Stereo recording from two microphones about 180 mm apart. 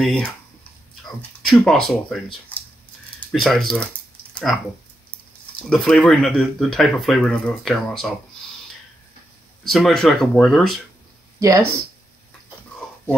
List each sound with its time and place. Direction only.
0.0 s speech: 5° left (ahead or behind)
1.4 s speech: centre (ahead or behind)
2.5 s a sound: 10° left (ahead or behind)
5.6 s speech: 5° left (ahead or behind)
9.7 s speech: centre (ahead or behind)
11.3 s speech: 20° right (ahead or behind)